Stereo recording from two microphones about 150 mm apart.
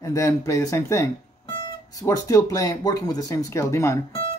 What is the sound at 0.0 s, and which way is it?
Speech, 20° left (ahead or behind).